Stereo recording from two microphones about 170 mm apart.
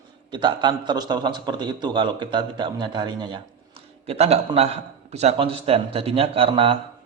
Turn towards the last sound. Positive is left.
turn(degrees=-30)  # may be behind; listen again after turning